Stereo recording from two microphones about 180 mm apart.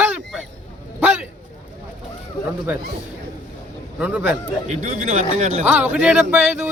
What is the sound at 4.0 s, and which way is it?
Speech, 10° right (ahead or behind).